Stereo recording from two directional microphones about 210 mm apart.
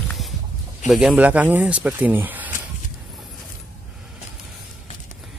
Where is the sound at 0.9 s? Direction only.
Centre (ahead or behind).